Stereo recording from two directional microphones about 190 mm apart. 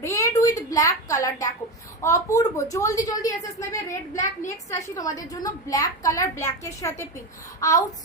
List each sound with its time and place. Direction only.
0.0 s a child's voice: 15° left (ahead or behind)